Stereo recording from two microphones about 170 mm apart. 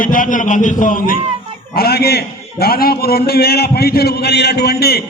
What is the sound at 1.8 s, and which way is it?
A man's voice, 70° left (ahead or behind).